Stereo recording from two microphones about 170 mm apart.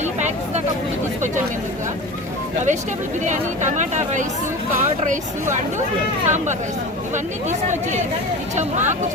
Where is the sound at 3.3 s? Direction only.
45° right (ahead or behind).